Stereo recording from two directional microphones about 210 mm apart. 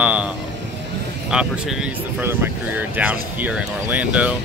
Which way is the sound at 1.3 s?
5° right (ahead or behind).